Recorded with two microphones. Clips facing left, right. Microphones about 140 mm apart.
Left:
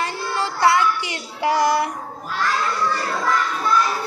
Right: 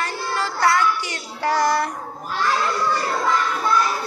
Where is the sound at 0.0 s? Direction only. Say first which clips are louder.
Left 1 dB; 25° left (ahead or behind).